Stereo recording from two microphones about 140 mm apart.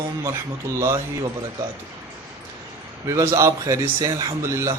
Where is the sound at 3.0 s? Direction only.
20° right (ahead or behind).